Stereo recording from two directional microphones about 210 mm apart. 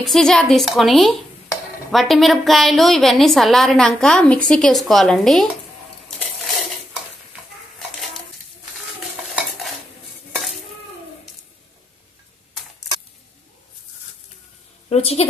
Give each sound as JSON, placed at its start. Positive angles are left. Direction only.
{"t": 0.0, "sound": "a woman's voice", "side_deg": 0}
{"t": 6.0, "sound": "a sound", "side_deg": 0}
{"t": 14.9, "sound": "a woman's voice", "side_deg": 30}